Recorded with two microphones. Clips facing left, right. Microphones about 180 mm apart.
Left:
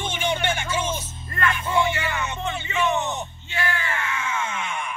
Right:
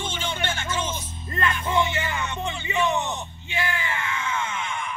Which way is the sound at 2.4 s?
15° right (ahead or behind).